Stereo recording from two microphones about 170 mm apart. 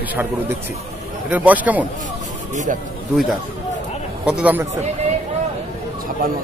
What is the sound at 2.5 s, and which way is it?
Speech, 45° right (ahead or behind).